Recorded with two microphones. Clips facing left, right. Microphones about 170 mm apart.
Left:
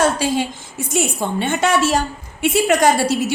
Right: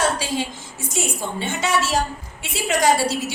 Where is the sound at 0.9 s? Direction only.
60° left (ahead or behind).